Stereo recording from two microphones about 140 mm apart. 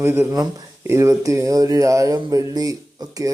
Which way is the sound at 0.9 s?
20° right (ahead or behind).